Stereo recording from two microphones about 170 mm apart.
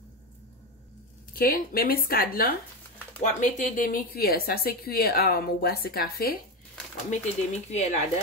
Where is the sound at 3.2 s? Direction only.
50° left (ahead or behind).